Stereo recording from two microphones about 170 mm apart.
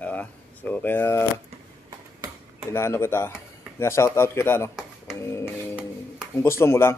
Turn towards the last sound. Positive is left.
turn(degrees=15)  # may be behind; listen again after turning